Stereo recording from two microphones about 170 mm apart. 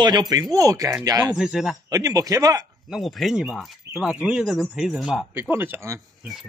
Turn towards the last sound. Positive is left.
turn(degrees=-15)  # may be behind; listen again after turning